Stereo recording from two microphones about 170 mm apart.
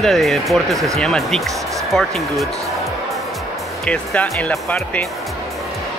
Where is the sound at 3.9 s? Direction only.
5° left (ahead or behind).